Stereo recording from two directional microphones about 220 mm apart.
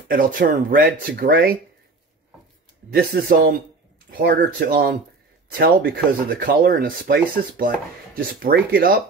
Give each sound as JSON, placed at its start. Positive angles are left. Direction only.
{"t": 0.1, "sound": "speech", "side_deg": -40}
{"t": 2.9, "sound": "speech", "side_deg": -45}